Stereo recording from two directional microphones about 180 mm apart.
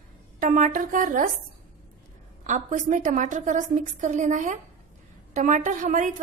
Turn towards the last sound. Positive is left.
turn(degrees=-45)  # may be behind; listen again after turning